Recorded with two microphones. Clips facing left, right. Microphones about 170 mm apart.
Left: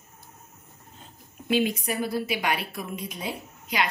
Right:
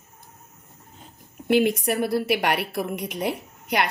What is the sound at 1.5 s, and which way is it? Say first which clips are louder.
A woman's voice: right 5 dB; 65° right (ahead or behind).